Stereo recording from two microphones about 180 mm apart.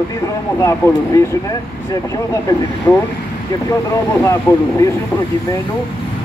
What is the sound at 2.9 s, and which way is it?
Speech, 15° left (ahead or behind).